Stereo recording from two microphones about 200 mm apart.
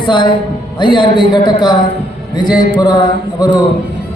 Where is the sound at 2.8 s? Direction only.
20° left (ahead or behind).